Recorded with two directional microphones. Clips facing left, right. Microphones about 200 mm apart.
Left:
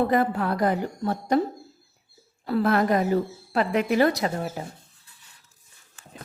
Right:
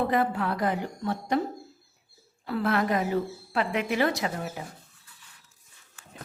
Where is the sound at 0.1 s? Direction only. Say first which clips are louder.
Left 3 dB; 40° left (ahead or behind).